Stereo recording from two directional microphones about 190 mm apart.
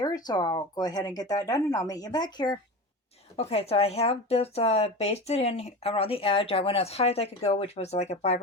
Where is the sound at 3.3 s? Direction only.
35° left (ahead or behind).